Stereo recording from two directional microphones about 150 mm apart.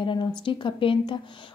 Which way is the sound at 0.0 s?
35° left (ahead or behind).